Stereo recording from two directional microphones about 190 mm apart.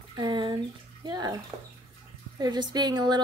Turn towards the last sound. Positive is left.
turn(degrees=-20)  # may be behind; listen again after turning